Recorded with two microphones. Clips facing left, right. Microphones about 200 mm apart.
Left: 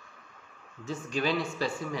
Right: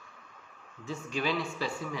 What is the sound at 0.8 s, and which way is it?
Speech, 40° left (ahead or behind).